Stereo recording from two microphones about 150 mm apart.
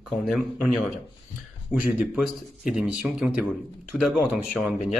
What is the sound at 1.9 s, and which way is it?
Speech, 5° right (ahead or behind).